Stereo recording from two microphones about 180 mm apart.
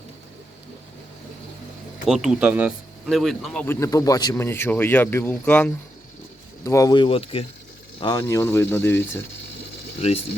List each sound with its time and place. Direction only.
2.0 s speech: centre (ahead or behind); by 8.2 s 25° left (ahead or behind)
8.2 s speech: 15° left (ahead or behind)